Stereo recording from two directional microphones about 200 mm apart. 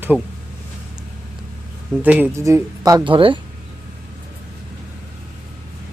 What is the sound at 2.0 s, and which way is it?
Speech, 10° right (ahead or behind).